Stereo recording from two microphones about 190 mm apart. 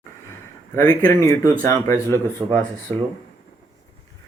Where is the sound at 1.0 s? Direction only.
15° left (ahead or behind).